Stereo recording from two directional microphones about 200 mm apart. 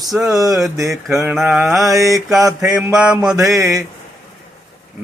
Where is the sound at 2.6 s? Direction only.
5° right (ahead or behind).